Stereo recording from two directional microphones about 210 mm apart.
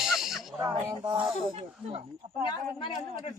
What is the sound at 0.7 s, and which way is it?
Speech, 20° right (ahead or behind).